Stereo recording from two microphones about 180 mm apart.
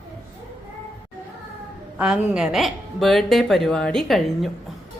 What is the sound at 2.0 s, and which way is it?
A woman's voice, 5° right (ahead or behind).